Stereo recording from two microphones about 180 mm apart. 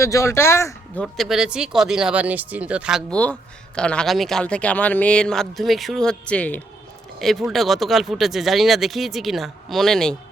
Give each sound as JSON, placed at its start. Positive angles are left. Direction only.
{"t": 0.0, "sound": "speech", "side_deg": 15}
{"t": 1.0, "sound": "speech", "side_deg": 0}
{"t": 3.1, "sound": "speech", "side_deg": 5}